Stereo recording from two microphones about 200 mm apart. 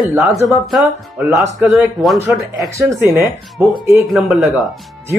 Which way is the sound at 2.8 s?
15° right (ahead or behind).